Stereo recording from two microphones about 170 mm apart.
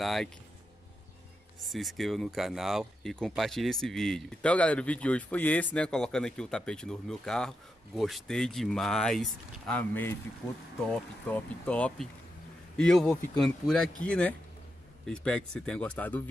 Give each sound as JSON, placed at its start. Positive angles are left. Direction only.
{"t": 0.0, "sound": "speech", "side_deg": 0}
{"t": 1.6, "sound": "speech", "side_deg": 0}